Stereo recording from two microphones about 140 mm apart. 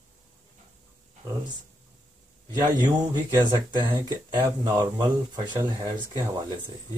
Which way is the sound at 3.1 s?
30° right (ahead or behind).